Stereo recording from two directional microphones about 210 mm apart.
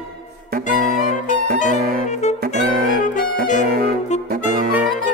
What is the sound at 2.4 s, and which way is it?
Music, 40° right (ahead or behind).